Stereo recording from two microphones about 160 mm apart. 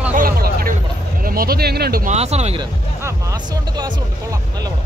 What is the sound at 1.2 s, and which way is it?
Speech, 65° right (ahead or behind).